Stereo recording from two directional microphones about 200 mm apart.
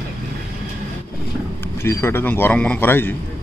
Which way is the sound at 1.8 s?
10° left (ahead or behind).